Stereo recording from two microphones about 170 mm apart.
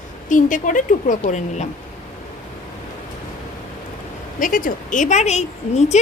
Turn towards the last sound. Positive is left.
turn(degrees=40)  # may be behind; listen again after turning